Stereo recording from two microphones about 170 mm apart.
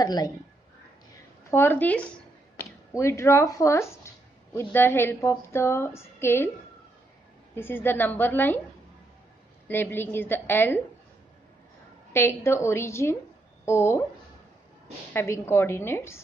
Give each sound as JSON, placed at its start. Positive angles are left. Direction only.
{"t": 0.0, "sound": "speech", "side_deg": 25}
{"t": 1.5, "sound": "a woman's voice", "side_deg": 10}
{"t": 7.5, "sound": "a woman's voice", "side_deg": 15}
{"t": 9.7, "sound": "a woman's voice", "side_deg": 10}
{"t": 12.1, "sound": "a woman's voice", "side_deg": 15}
{"t": 15.1, "sound": "a woman's voice", "side_deg": 15}